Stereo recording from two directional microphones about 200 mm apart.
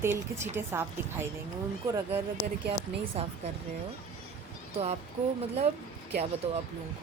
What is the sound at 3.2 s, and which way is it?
Speech, 30° right (ahead or behind).